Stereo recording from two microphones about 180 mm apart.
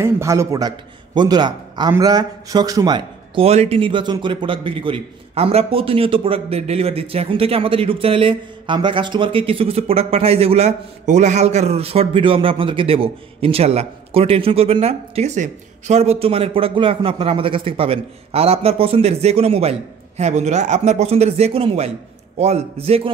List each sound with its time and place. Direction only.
0.0 s a man's voice: 15° right (ahead or behind); by 23.1 s 30° right (ahead or behind)